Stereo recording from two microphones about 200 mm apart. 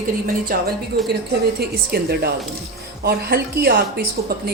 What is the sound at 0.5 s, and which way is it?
Speech, 45° right (ahead or behind).